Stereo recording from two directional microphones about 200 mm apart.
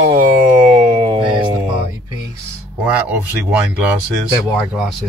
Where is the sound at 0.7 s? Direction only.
30° right (ahead or behind).